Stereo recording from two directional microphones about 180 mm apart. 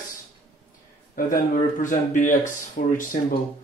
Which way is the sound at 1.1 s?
50° left (ahead or behind).